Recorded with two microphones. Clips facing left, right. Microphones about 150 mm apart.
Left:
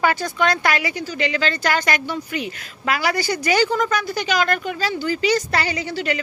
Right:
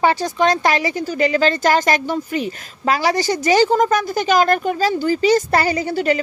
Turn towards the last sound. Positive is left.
turn(degrees=-45)  # may be behind; listen again after turning